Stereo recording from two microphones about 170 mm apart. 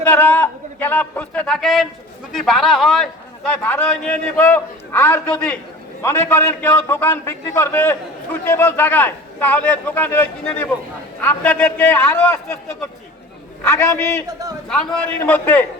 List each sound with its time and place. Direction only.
0.0 s a man's voice: 10° left (ahead or behind)
13.7 s a man's voice: 15° left (ahead or behind)
14.3 s a man's voice: 20° right (ahead or behind)
14.7 s a man's voice: 5° left (ahead or behind)